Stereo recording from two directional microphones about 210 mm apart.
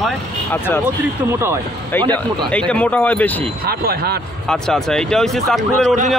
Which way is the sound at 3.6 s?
45° right (ahead or behind).